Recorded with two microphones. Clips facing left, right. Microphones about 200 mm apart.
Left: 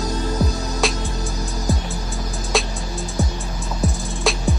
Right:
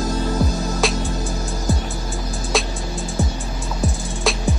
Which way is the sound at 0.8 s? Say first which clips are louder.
Even; centre (ahead or behind).